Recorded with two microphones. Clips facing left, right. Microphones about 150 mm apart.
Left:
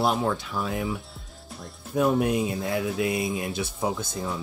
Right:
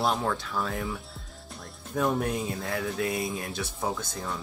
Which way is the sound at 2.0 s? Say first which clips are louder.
Left 5 dB; 15° left (ahead or behind).